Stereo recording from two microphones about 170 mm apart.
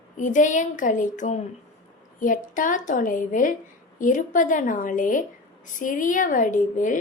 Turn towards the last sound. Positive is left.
turn(degrees=50)  # may be behind; listen again after turning